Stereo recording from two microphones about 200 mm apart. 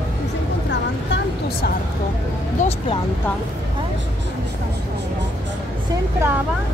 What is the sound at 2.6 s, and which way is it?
Vehicle, 30° left (ahead or behind).